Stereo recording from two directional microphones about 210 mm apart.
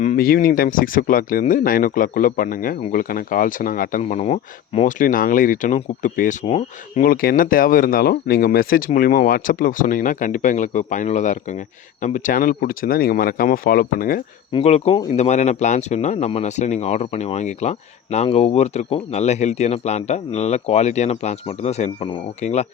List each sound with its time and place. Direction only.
0.0 s speech: 40° left (ahead or behind)
7.0 s speech: 45° left (ahead or behind)
14.5 s speech: 30° left (ahead or behind)